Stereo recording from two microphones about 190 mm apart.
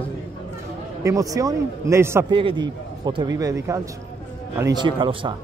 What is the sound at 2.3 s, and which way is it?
A man's voice, 25° right (ahead or behind).